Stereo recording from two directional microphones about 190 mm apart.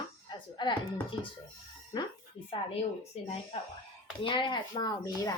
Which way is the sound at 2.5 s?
30° left (ahead or behind).